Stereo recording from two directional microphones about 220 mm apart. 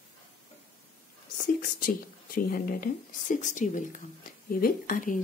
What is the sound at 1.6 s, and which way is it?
Speech, 40° left (ahead or behind).